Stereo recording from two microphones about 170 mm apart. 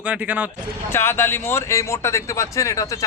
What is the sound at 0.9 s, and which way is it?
Speech, 15° left (ahead or behind).